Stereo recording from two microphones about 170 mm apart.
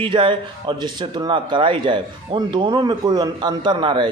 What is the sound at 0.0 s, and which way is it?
A man's voice, 30° right (ahead or behind).